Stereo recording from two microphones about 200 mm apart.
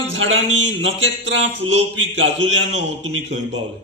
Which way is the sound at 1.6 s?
90° right.